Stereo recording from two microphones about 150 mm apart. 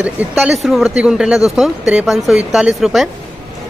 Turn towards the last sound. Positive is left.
turn(degrees=0)  # may be behind; listen again after turning